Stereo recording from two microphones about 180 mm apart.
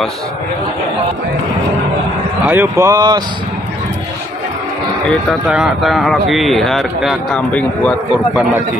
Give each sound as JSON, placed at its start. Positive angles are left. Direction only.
{"t": 2.4, "sound": "speech", "side_deg": -10}
{"t": 5.5, "sound": "a man's voice", "side_deg": 0}